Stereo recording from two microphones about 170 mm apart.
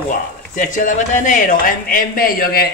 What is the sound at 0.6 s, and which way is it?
Speech, 50° left (ahead or behind).